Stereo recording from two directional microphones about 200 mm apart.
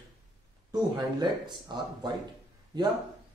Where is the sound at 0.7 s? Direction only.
20° right (ahead or behind).